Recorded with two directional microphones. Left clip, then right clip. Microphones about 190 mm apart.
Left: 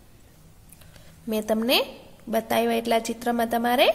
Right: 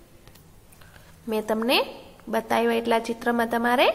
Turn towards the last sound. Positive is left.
turn(degrees=20)  # may be behind; listen again after turning